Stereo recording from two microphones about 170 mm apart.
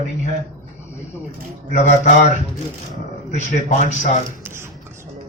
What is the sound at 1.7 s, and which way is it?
Speech, 40° left (ahead or behind).